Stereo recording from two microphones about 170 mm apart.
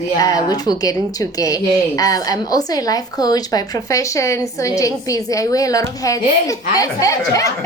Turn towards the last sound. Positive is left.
turn(degrees=20)  # may be behind; listen again after turning